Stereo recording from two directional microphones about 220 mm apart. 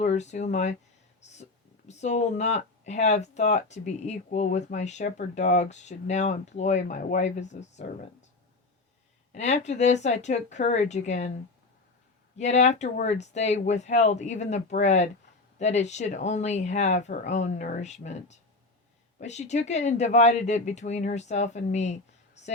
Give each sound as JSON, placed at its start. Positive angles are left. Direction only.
{"t": 0.0, "sound": "speech", "side_deg": 30}
{"t": 9.3, "sound": "speech", "side_deg": 30}
{"t": 12.4, "sound": "speech", "side_deg": 30}